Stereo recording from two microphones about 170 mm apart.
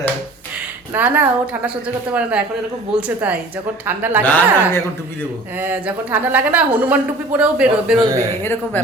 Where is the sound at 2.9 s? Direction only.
5° right (ahead or behind).